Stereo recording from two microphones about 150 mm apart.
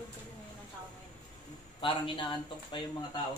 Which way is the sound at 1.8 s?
35° left (ahead or behind).